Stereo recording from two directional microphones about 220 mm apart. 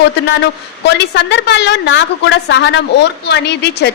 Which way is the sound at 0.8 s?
50° left (ahead or behind).